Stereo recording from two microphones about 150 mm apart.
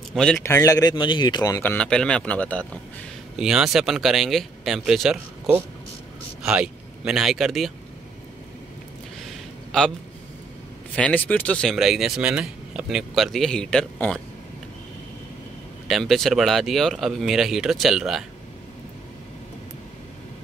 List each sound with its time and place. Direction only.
0.1 s a man's voice: 5° left (ahead or behind)
0.4 s speech: 20° left (ahead or behind)
3.3 s speech: 5° right (ahead or behind)
6.4 s speech: 5° right (ahead or behind)
9.7 s a man's voice: 5° left (ahead or behind)
11.0 s speech: 10° left (ahead or behind)
15.9 s speech: centre (ahead or behind)